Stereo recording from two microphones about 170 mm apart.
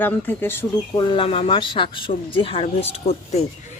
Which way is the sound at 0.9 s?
30° left (ahead or behind).